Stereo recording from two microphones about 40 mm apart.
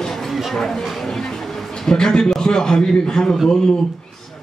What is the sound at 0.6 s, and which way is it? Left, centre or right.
Speech, centre.